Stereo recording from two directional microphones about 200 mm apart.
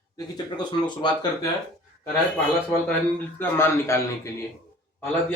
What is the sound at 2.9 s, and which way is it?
Speech, 10° left (ahead or behind).